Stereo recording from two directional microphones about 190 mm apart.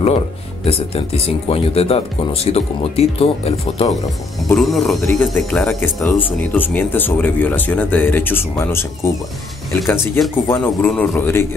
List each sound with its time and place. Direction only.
0.7 s speech: 30° left (ahead or behind)
4.5 s speech: centre (ahead or behind)